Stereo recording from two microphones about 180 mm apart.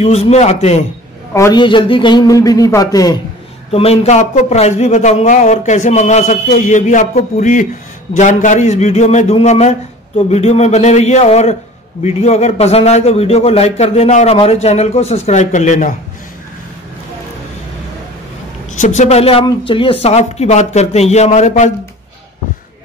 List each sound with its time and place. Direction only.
0.0 s speech: 35° left (ahead or behind)
1.3 s a man's voice: 20° left (ahead or behind)
3.7 s speech: 35° left (ahead or behind)
18.7 s speech: 40° left (ahead or behind)